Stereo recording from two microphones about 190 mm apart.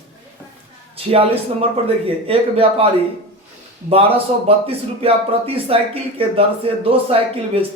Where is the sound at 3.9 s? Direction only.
30° right (ahead or behind).